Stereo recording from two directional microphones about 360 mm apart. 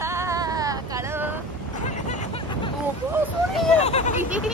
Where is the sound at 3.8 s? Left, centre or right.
Centre.